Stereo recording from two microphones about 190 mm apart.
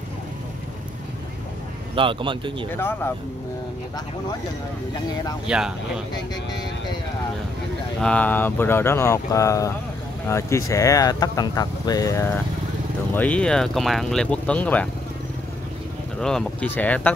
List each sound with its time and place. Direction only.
2.0 s speech: 25° right (ahead or behind)
2.7 s speech: 10° left (ahead or behind)
5.5 s speech: 5° right (ahead or behind)
8.0 s speech: 5° left (ahead or behind)
16.2 s speech: 5° left (ahead or behind)